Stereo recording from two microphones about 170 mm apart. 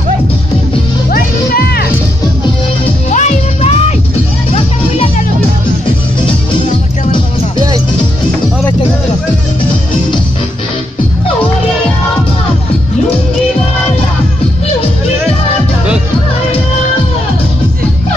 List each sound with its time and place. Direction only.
1.1 s music: 65° left (ahead or behind)
3.1 s music: 40° left (ahead or behind)